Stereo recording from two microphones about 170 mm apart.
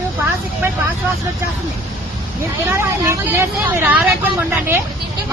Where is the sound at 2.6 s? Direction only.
15° right (ahead or behind).